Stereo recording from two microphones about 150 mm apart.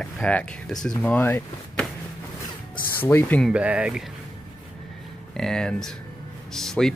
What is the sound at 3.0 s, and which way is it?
Speech, 15° left (ahead or behind).